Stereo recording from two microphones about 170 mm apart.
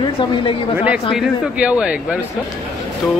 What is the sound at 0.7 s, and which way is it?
Speech, 10° right (ahead or behind).